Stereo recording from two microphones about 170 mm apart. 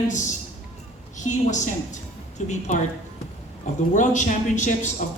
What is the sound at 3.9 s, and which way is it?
A woman's voice, 45° left (ahead or behind).